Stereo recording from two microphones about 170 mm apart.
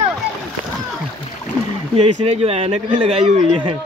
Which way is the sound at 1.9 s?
40° right (ahead or behind).